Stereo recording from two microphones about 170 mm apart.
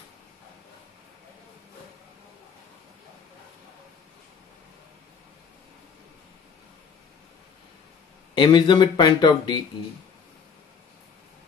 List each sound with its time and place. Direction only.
8.4 s speech: 25° left (ahead or behind)